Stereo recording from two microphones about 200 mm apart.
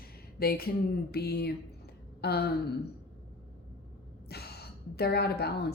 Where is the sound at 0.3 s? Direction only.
50° left (ahead or behind).